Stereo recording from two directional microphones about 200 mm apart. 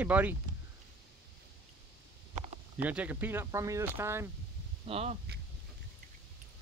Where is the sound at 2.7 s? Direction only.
5° right (ahead or behind).